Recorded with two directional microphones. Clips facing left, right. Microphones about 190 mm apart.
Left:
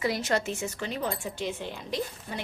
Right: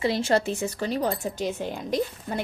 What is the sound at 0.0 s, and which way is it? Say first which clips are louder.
Speech: right 5 dB; 30° right (ahead or behind).